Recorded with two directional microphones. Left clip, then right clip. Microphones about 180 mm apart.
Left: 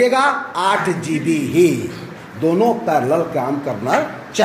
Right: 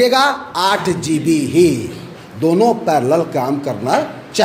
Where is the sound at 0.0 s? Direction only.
25° right (ahead or behind).